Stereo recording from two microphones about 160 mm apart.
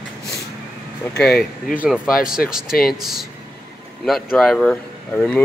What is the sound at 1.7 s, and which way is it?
Speech, 5° right (ahead or behind).